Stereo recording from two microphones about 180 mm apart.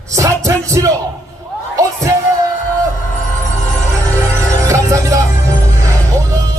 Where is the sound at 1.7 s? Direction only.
15° right (ahead or behind).